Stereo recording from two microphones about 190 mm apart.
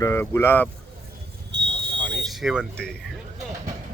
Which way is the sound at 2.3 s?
Centre (ahead or behind).